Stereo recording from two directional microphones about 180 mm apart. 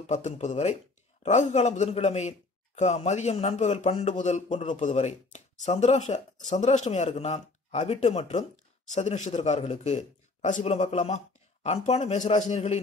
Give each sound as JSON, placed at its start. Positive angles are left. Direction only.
{"t": 0.0, "sound": "speech", "side_deg": 40}